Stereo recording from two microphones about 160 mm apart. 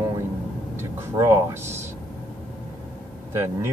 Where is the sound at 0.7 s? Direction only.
20° right (ahead or behind).